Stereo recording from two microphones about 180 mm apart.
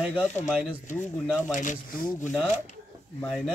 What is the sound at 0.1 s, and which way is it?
Speech, 10° left (ahead or behind).